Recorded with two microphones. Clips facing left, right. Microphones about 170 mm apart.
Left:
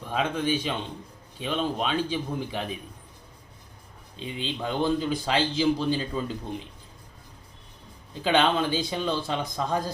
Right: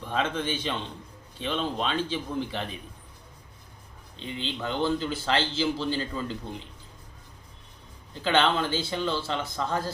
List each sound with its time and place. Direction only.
0.1 s a man's voice: 10° left (ahead or behind)
4.2 s a man's voice: 15° left (ahead or behind)
8.2 s a man's voice: 15° left (ahead or behind)